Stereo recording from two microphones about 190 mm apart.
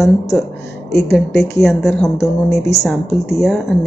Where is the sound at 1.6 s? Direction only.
Centre (ahead or behind).